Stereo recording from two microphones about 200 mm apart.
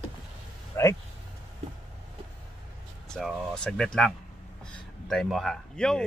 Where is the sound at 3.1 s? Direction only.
5° left (ahead or behind).